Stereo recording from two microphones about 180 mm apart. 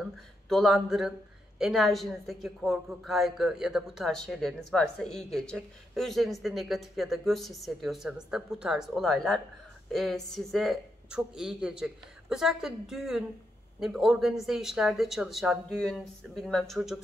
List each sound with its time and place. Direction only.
0.5 s speech: centre (ahead or behind)